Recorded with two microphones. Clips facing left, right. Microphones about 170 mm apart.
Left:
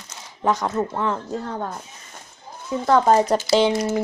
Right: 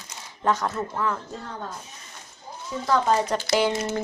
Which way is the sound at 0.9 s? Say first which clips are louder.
Left 3 dB; 30° left (ahead or behind).